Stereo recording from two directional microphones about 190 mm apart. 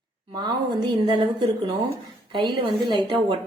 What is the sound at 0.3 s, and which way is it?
A woman's voice, 25° right (ahead or behind).